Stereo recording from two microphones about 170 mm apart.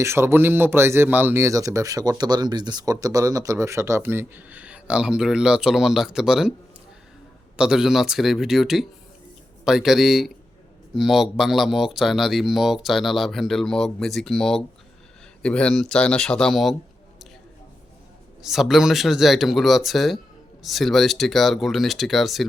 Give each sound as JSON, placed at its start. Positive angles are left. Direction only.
{"t": 0.0, "sound": "speech", "side_deg": -15}
{"t": 7.5, "sound": "speech", "side_deg": -5}
{"t": 18.4, "sound": "speech", "side_deg": 0}